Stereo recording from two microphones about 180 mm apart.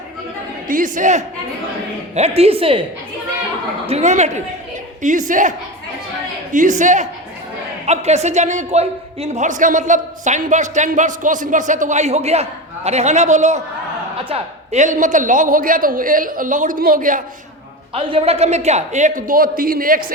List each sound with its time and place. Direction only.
0.7 s a man's voice: 45° right (ahead or behind)
3.8 s a man's voice: 35° right (ahead or behind)
17.9 s speech: 30° right (ahead or behind); by 20.1 s 50° right (ahead or behind)